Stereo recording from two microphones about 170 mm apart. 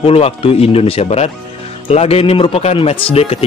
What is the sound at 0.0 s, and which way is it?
Speech, 35° left (ahead or behind).